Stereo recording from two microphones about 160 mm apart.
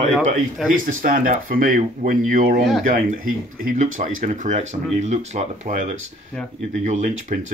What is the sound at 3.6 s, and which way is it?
Speech, 55° right (ahead or behind).